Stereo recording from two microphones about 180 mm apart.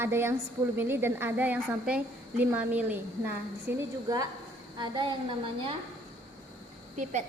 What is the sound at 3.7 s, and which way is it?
A woman's voice, 20° right (ahead or behind).